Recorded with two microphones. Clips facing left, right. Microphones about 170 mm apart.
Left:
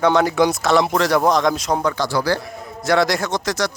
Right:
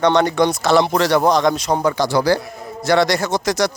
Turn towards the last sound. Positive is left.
turn(degrees=-15)  # may be behind; listen again after turning